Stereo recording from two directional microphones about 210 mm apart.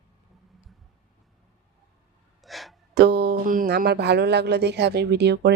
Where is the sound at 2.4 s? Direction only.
Centre (ahead or behind).